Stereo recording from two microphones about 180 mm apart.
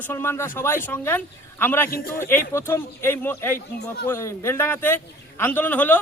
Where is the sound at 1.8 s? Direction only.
55° left (ahead or behind).